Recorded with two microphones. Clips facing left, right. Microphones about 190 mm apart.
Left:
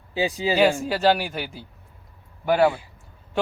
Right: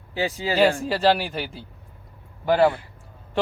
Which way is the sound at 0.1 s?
15° left (ahead or behind).